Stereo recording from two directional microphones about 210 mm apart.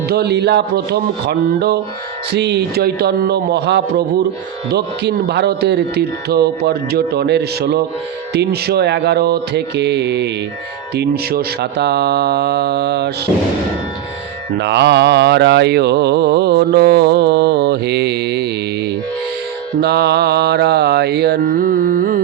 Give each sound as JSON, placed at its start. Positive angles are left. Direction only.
{"t": 0.1, "sound": "mantra", "side_deg": -50}
{"t": 14.6, "sound": "mantra", "side_deg": -55}
{"t": 19.8, "sound": "mantra", "side_deg": -50}